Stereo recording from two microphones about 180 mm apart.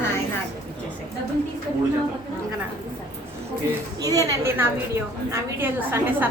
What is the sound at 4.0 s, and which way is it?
A woman's voice, 20° right (ahead or behind).